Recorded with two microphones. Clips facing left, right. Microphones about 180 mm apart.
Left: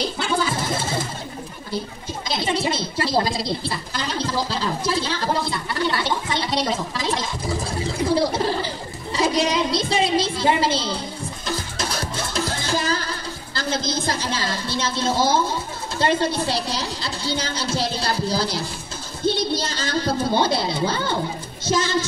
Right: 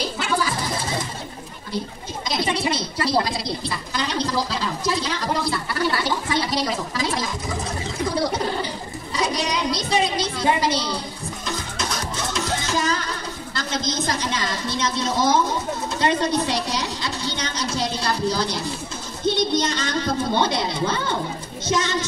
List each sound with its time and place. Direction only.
0.2 s music: 25° left (ahead or behind)
2.2 s speech: 25° left (ahead or behind)
9.1 s speech: 25° left (ahead or behind)
11.4 s music: 30° left (ahead or behind)
13.6 s a child's voice: 30° left (ahead or behind)